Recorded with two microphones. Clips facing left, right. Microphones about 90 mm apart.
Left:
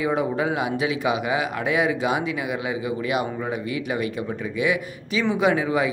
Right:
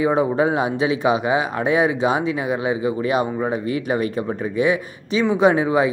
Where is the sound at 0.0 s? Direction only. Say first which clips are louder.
Right 5 dB; 30° right (ahead or behind).